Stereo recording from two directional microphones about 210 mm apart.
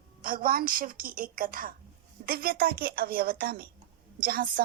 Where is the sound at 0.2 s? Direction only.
40° right (ahead or behind).